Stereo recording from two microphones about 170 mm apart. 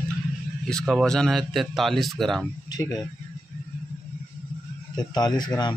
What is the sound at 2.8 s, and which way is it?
Speech, 15° left (ahead or behind).